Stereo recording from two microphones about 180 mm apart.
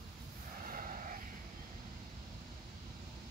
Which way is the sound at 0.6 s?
50° right (ahead or behind).